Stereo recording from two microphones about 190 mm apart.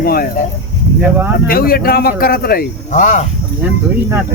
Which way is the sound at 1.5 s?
50° left (ahead or behind).